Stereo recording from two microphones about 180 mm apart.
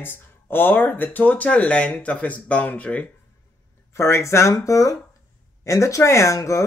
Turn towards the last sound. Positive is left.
turn(degrees=15)  # may be behind; listen again after turning